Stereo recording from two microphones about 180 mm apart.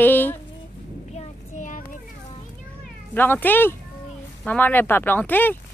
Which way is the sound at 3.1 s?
10° left (ahead or behind).